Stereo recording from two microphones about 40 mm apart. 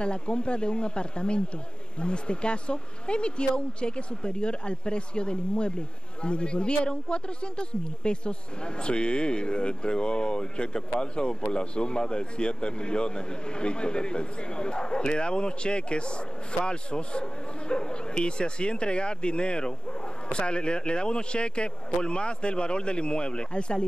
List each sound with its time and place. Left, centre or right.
0.0 s speech: left